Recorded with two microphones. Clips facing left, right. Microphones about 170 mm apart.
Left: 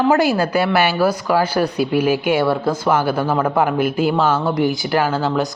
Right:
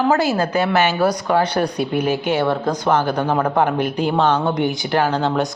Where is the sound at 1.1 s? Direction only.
5° left (ahead or behind).